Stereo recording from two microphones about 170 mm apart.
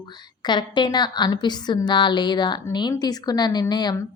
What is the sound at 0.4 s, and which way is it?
A woman's voice, 25° left (ahead or behind).